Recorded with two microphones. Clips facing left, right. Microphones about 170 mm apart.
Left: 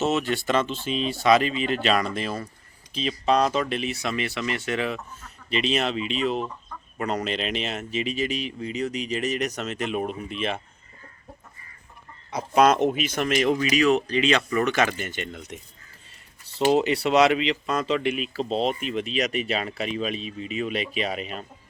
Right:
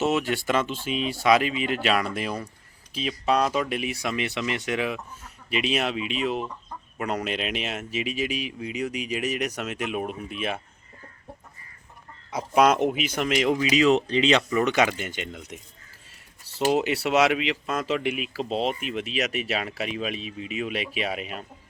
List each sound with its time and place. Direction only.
0.0 s speech: 10° right (ahead or behind)
12.3 s speech: 10° right (ahead or behind)
13.6 s speech: 20° right (ahead or behind)